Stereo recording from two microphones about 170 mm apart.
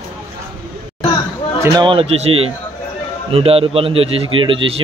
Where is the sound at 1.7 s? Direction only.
30° right (ahead or behind).